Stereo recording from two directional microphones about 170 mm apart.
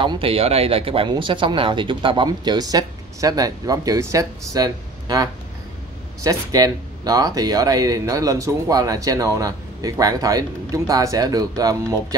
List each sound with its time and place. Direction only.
0.0 s speech: 30° right (ahead or behind)